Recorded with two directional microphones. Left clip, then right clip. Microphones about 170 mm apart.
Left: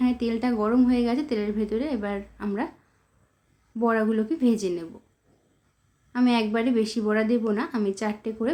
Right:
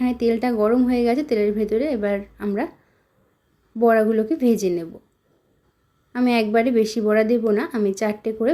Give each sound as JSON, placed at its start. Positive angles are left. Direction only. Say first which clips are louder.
{"t": 0.0, "sound": "a woman's voice", "louder": "right 5 dB", "side_deg": -20}
{"t": 3.8, "sound": "a woman's voice", "louder": "right 7 dB", "side_deg": -20}
{"t": 6.1, "sound": "a woman's voice", "louder": "right 5 dB", "side_deg": -20}